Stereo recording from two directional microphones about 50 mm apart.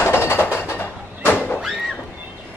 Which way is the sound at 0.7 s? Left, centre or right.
Left.